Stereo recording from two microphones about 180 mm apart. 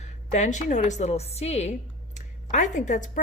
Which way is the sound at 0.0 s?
40° left (ahead or behind).